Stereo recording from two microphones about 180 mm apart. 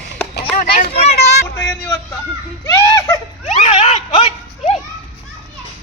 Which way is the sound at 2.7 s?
15° left (ahead or behind).